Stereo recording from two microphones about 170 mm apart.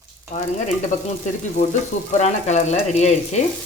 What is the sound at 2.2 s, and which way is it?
Speech, 40° left (ahead or behind).